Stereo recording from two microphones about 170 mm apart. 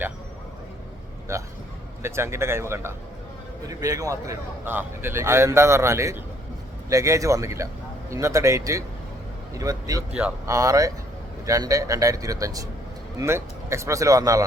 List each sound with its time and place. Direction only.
1.3 s a man's voice: 15° right (ahead or behind)
10.1 s a man's voice: 5° right (ahead or behind)
10.4 s speech: 20° right (ahead or behind)